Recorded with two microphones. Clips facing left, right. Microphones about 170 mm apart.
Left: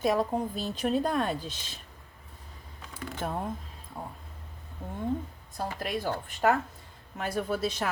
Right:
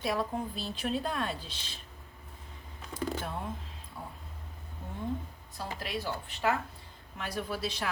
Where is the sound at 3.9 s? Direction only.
55° left (ahead or behind).